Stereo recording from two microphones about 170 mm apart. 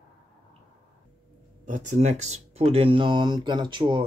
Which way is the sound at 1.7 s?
45° right (ahead or behind).